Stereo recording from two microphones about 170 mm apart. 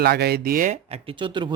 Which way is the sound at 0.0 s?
70° right (ahead or behind).